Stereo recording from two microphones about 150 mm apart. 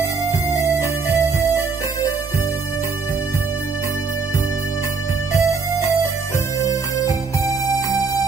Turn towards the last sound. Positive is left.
turn(degrees=20)  # may be behind; listen again after turning